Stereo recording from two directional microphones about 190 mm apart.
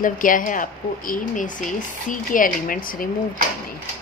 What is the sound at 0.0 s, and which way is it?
Speech, 45° left (ahead or behind).